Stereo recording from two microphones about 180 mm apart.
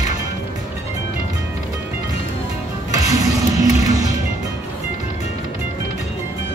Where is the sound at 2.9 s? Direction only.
20° right (ahead or behind).